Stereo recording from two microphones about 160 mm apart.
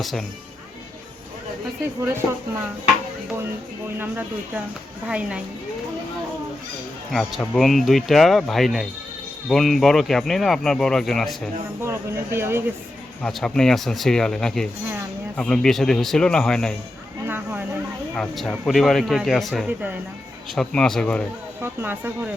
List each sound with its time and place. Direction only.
0.0 s speech: centre (ahead or behind)
2.0 s speech: 15° right (ahead or behind)
3.9 s speech: 10° right (ahead or behind)
7.1 s speech: centre (ahead or behind)
11.8 s speech: 15° right (ahead or behind)
13.2 s speech: 5° left (ahead or behind)
17.2 s a sound: 15° right (ahead or behind)
18.2 s speech: 5° left (ahead or behind)
19.6 s speech: 10° right (ahead or behind)
20.6 s speech: 5° left (ahead or behind)
21.6 s speech: 15° right (ahead or behind)